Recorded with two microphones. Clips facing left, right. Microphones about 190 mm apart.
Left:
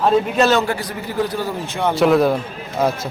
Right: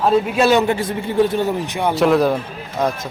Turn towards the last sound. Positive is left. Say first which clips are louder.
# left 1 dB
turn(degrees=5)  # may be behind; listen again after turning